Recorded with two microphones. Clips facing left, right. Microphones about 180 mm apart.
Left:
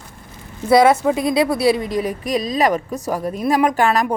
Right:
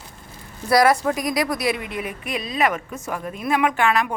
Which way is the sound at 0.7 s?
25° left (ahead or behind).